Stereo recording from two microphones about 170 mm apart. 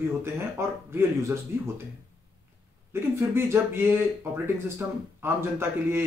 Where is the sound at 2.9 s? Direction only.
15° right (ahead or behind).